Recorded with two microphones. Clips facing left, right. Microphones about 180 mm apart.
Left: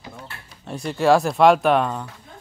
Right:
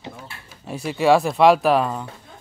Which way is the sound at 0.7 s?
Centre (ahead or behind).